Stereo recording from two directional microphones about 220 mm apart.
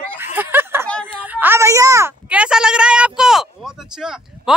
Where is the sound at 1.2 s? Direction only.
10° right (ahead or behind).